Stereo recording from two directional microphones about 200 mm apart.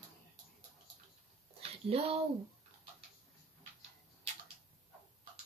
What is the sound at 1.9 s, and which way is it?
Speech, 30° right (ahead or behind).